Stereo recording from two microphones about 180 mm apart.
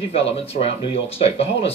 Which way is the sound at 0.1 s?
35° left (ahead or behind).